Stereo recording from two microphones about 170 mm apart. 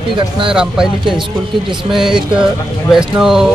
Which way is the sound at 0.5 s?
5° right (ahead or behind).